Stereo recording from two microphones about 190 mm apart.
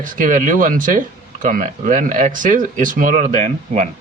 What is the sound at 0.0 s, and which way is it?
Speech, 45° right (ahead or behind).